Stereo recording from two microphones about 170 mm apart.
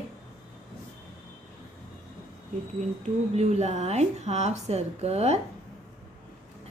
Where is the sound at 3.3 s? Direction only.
40° right (ahead or behind).